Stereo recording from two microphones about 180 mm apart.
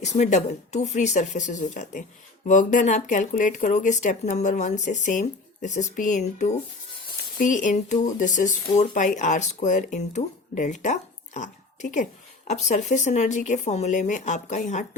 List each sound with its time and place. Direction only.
0.0 s speech: 40° left (ahead or behind)